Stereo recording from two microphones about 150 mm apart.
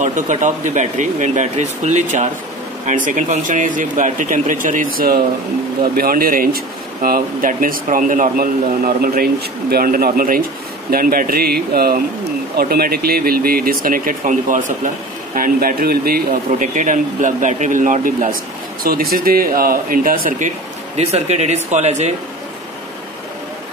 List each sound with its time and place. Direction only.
0.0 s a man's voice: 55° right (ahead or behind)